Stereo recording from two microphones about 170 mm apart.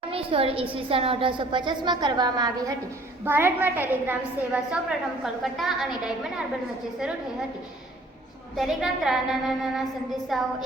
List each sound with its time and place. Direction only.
0.1 s a woman's voice: 30° right (ahead or behind)
3.2 s a woman's voice: 10° right (ahead or behind)
8.5 s a woman's voice: centre (ahead or behind)